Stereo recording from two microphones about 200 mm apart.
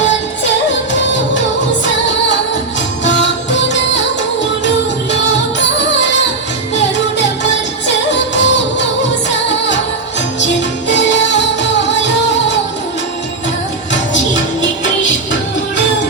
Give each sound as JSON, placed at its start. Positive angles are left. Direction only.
{"t": 1.8, "sound": "music", "side_deg": 65}
{"t": 5.1, "sound": "music", "side_deg": 65}
{"t": 7.9, "sound": "music", "side_deg": 60}